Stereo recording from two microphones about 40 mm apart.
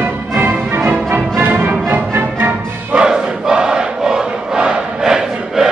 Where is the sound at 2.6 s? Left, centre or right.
Right.